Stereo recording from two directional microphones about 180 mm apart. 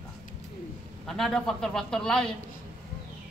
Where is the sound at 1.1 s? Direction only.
Centre (ahead or behind).